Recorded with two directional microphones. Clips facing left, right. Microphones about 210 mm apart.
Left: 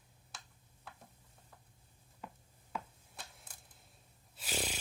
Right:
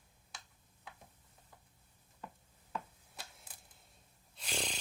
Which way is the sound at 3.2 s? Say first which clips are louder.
Even; centre (ahead or behind).